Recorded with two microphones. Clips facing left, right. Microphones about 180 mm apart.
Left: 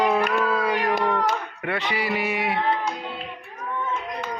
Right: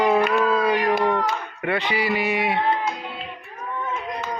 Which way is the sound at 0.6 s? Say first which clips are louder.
Right 3 dB; centre (ahead or behind).